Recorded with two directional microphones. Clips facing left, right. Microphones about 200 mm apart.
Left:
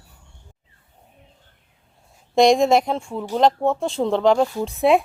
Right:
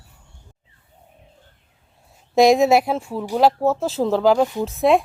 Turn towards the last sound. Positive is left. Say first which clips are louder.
# even
turn(degrees=0)  # may be behind; listen again after turning